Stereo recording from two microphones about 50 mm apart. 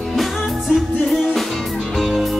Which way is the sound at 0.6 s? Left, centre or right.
Centre.